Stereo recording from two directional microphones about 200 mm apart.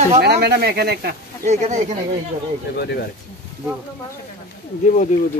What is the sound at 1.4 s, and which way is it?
Speech, 35° right (ahead or behind).